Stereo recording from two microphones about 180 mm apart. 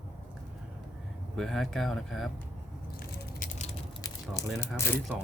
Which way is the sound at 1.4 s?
Centre (ahead or behind).